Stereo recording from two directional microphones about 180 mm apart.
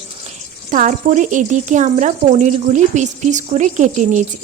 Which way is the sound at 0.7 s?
45° right (ahead or behind).